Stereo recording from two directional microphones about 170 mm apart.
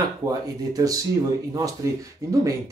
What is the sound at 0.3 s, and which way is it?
Speech, 20° right (ahead or behind).